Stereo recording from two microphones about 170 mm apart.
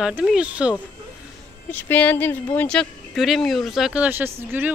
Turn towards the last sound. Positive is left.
turn(degrees=-10)  # may be behind; listen again after turning